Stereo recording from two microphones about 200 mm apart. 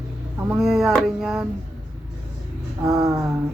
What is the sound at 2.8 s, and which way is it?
Speech, centre (ahead or behind).